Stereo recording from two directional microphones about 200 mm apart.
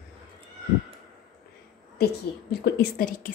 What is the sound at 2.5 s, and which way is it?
Speech, 50° left (ahead or behind).